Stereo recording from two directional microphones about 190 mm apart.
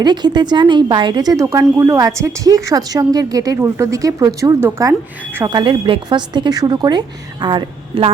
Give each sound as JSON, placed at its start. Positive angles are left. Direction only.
{"t": 0.0, "sound": "a woman's voice", "side_deg": -20}